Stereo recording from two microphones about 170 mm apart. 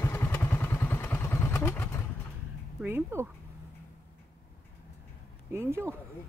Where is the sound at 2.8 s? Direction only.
15° right (ahead or behind).